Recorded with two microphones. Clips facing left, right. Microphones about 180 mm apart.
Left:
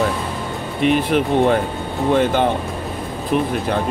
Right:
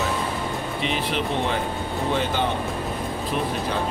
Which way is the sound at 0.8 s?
50° left (ahead or behind).